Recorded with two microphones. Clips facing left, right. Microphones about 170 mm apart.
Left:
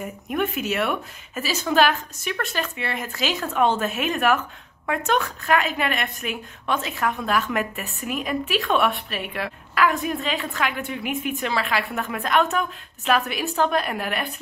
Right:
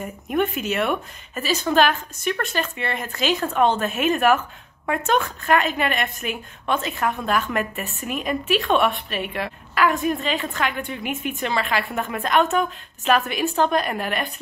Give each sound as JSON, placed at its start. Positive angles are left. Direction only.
{"t": 0.0, "sound": "a woman's voice", "side_deg": 0}